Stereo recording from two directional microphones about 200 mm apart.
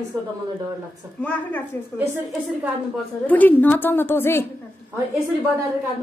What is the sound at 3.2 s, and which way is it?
A woman's voice, 10° left (ahead or behind).